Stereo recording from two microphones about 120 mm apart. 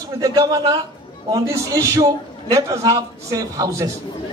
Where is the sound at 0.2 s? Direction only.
30° right (ahead or behind).